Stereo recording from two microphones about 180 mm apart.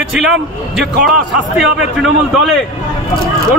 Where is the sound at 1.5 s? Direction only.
Centre (ahead or behind).